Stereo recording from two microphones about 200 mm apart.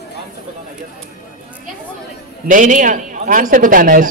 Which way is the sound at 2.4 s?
40° right (ahead or behind).